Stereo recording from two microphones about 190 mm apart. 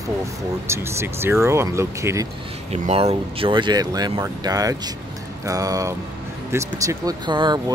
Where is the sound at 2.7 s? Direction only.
35° right (ahead or behind).